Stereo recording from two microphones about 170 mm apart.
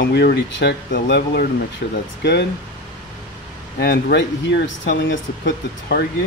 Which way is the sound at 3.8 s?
90° left.